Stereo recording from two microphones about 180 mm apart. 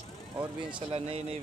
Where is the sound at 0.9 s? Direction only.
30° right (ahead or behind).